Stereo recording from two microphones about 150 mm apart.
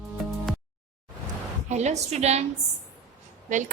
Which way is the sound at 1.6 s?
50° right (ahead or behind).